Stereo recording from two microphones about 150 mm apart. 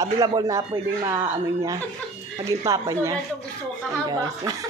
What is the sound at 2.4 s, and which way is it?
Speech, 20° right (ahead or behind).